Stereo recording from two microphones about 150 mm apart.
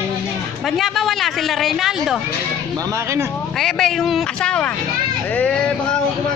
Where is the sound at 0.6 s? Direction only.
Centre (ahead or behind).